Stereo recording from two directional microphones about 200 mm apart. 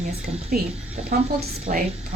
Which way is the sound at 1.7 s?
35° right (ahead or behind).